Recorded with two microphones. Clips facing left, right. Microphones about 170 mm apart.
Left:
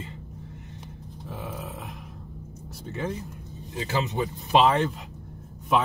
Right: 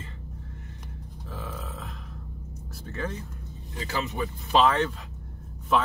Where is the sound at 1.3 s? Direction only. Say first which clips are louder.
Left 2 dB; 20° left (ahead or behind).